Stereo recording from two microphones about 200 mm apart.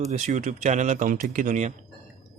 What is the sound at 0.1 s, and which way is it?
Speech, 35° right (ahead or behind).